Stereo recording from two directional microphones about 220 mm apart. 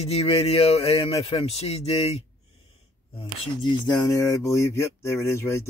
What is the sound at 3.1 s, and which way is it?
Speech, 20° left (ahead or behind).